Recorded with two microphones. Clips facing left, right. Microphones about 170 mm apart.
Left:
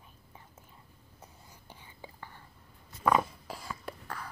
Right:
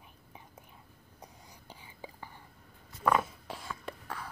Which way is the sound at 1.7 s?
10° right (ahead or behind).